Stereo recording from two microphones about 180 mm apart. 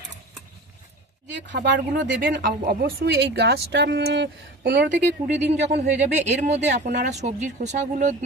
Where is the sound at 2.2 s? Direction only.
55° right (ahead or behind); by 4.9 s 75° right (ahead or behind).